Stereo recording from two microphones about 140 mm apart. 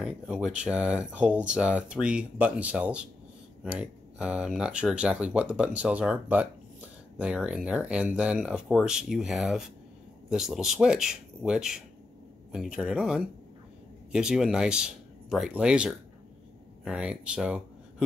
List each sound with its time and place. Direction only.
0.0 s speech: 5° right (ahead or behind)